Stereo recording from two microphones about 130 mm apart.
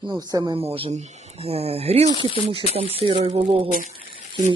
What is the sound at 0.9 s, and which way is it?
Speech, 60° right (ahead or behind).